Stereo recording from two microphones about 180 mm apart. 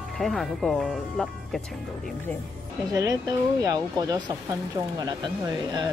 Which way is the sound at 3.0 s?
20° right (ahead or behind).